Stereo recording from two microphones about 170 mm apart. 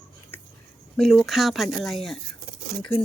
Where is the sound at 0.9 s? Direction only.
Centre (ahead or behind).